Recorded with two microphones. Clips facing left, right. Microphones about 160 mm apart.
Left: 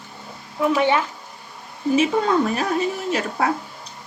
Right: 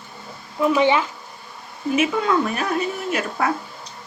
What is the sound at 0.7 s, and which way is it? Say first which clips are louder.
Speech: right 2 dB; 15° right (ahead or behind).